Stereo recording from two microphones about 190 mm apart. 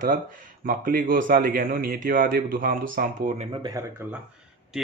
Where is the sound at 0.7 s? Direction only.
45° right (ahead or behind).